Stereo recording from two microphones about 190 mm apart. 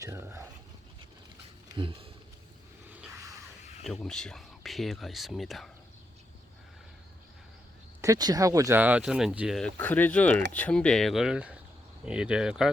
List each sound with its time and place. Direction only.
0.0 s speech: 15° right (ahead or behind)
1.8 s speech: 25° right (ahead or behind)
2.9 s a sound: 10° right (ahead or behind)
3.8 s speech: centre (ahead or behind)
8.0 s speech: 20° right (ahead or behind); by 12.7 s 5° right (ahead or behind)